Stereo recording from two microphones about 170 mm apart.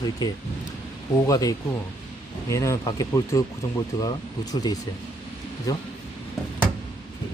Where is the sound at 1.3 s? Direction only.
20° left (ahead or behind).